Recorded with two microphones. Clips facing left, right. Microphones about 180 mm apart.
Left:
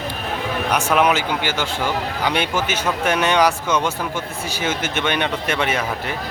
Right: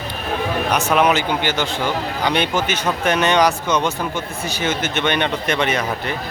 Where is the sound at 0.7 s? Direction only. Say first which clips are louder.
Even; 10° left (ahead or behind).